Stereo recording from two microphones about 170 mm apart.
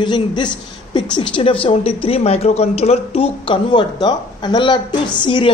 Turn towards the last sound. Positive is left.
turn(degrees=30)  # may be behind; listen again after turning